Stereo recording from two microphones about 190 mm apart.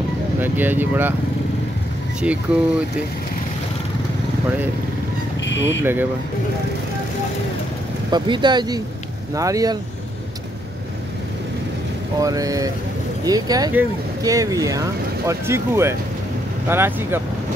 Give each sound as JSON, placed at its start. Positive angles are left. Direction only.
{"t": 0.4, "sound": "speech", "side_deg": -10}
{"t": 2.5, "sound": "speech", "side_deg": -5}
{"t": 5.4, "sound": "a sound", "side_deg": 70}
{"t": 5.8, "sound": "speech", "side_deg": -10}
{"t": 8.1, "sound": "speech", "side_deg": -25}
{"t": 12.2, "sound": "speech", "side_deg": -20}